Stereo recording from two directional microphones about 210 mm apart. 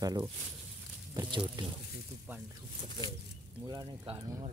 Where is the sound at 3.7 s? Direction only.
20° right (ahead or behind).